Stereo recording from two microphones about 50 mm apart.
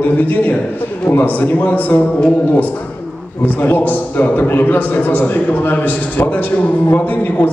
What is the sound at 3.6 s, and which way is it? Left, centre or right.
A man's voice, left.